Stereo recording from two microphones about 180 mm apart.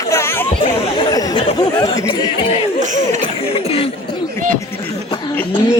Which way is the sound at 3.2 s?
35° left (ahead or behind).